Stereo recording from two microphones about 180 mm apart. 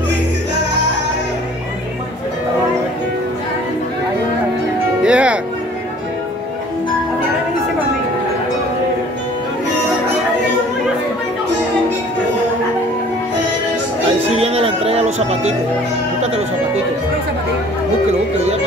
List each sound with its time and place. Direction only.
5.0 s music: 5° right (ahead or behind)
14.3 s music: 35° right (ahead or behind)